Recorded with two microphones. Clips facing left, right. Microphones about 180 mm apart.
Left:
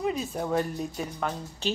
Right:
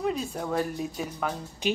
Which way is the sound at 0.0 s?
Centre (ahead or behind).